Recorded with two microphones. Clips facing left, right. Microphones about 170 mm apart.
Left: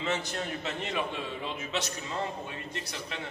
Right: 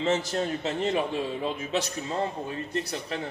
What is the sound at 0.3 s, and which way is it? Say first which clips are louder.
A man's voice: right 6 dB; 30° right (ahead or behind).